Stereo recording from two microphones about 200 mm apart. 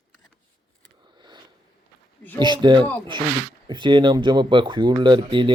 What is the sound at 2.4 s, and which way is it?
Speech, 20° right (ahead or behind).